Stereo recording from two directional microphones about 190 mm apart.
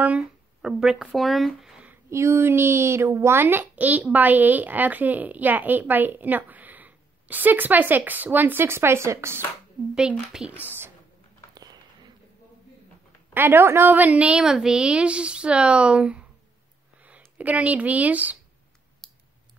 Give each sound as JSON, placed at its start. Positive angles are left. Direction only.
{"t": 0.0, "sound": "speech", "side_deg": -5}
{"t": 10.1, "sound": "speech", "side_deg": -5}
{"t": 11.5, "sound": "a sound", "side_deg": -20}
{"t": 13.3, "sound": "a woman's voice", "side_deg": -10}
{"t": 19.0, "sound": "clicking", "side_deg": 5}